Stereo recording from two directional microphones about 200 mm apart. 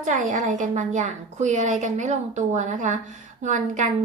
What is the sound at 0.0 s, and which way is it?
A woman's voice, 35° right (ahead or behind).